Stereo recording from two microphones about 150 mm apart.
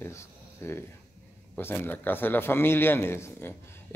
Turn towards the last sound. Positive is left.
turn(degrees=15)  # may be behind; listen again after turning